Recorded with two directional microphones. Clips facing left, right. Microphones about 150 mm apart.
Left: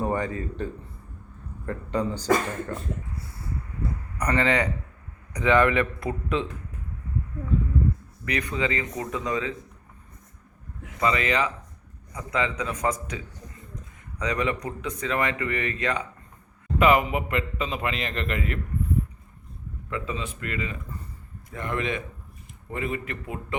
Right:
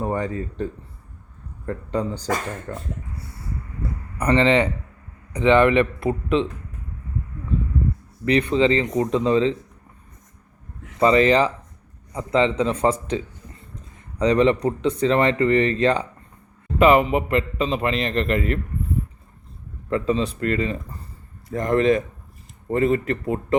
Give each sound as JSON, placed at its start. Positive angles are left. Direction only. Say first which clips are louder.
{"t": 0.0, "sound": "a man's voice", "louder": "right 2 dB", "side_deg": -30}
{"t": 4.2, "sound": "a man's voice", "louder": "right 6 dB", "side_deg": -25}
{"t": 8.2, "sound": "a man's voice", "louder": "right 10 dB", "side_deg": -30}
{"t": 11.0, "sound": "a man's voice", "louder": "right 8 dB", "side_deg": -35}
{"t": 19.9, "sound": "a man's voice", "louder": "right 10 dB", "side_deg": -35}